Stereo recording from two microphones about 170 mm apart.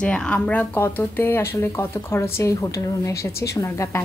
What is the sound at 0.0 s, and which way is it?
Speech, 5° left (ahead or behind).